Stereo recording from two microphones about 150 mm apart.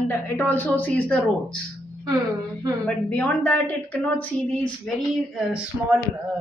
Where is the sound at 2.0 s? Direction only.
25° right (ahead or behind).